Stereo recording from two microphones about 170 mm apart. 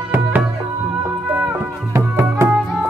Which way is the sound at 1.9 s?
15° right (ahead or behind).